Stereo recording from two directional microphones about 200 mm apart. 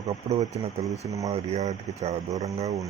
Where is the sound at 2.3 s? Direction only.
15° right (ahead or behind).